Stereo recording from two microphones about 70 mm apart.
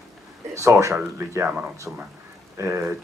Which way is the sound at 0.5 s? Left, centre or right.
Right.